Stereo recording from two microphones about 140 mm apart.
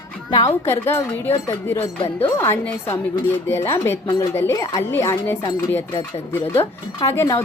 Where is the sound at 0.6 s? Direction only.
20° left (ahead or behind).